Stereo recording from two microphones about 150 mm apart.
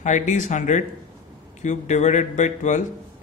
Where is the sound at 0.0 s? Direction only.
55° left (ahead or behind).